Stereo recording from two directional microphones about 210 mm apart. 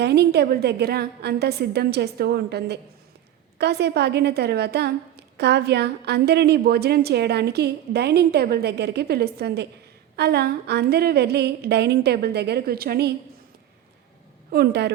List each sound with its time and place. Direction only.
0.0 s a woman's voice: 50° right (ahead or behind)
14.5 s a woman's voice: 50° right (ahead or behind)